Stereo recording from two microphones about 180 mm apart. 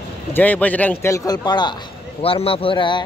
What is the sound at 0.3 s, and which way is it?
A man's voice, 10° left (ahead or behind).